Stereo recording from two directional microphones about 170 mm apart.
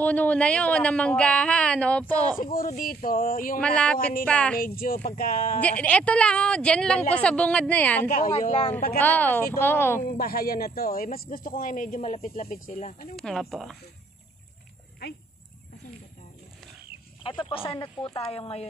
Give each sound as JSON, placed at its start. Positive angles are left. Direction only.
{"t": 0.0, "sound": "a woman's voice", "side_deg": 10}
{"t": 2.4, "sound": "speech", "side_deg": 55}
{"t": 3.5, "sound": "a woman's voice", "side_deg": 5}
{"t": 4.6, "sound": "speech", "side_deg": 60}
{"t": 5.6, "sound": "a woman's voice", "side_deg": 10}
{"t": 8.1, "sound": "a woman's voice", "side_deg": 45}
{"t": 8.9, "sound": "a woman's voice", "side_deg": 10}
{"t": 10.0, "sound": "speech", "side_deg": 60}
{"t": 13.1, "sound": "speech", "side_deg": 0}
{"t": 15.0, "sound": "speech", "side_deg": 75}
{"t": 17.2, "sound": "a woman's voice", "side_deg": 30}